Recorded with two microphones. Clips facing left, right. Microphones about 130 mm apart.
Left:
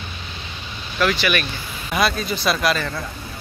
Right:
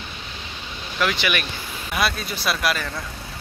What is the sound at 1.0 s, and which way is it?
Speech, 15° right (ahead or behind).